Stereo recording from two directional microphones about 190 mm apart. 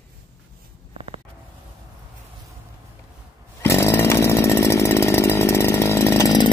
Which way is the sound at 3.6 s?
15° left (ahead or behind).